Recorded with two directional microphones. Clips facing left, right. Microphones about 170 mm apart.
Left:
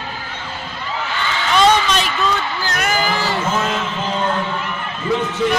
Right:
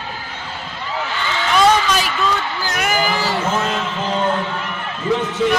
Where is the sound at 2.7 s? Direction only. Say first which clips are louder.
Right 1 dB; 10° right (ahead or behind).